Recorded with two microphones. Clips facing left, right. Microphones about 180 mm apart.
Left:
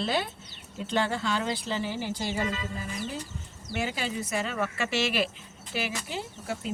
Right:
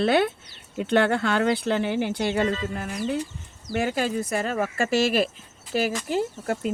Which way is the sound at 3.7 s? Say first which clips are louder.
Right 7 dB; 50° right (ahead or behind).